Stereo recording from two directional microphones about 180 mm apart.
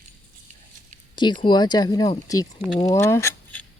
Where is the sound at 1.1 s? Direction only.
25° left (ahead or behind).